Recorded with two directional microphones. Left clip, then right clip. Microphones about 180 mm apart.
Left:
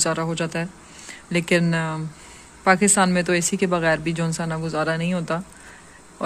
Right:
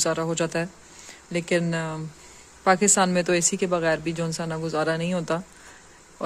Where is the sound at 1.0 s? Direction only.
10° right (ahead or behind).